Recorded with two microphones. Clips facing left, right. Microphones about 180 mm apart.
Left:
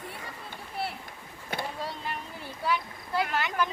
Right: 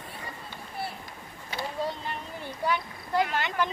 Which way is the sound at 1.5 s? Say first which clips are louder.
Left 1 dB; 55° left (ahead or behind).